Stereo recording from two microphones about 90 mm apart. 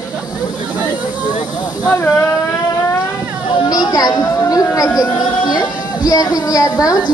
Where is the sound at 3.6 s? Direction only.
45° left (ahead or behind).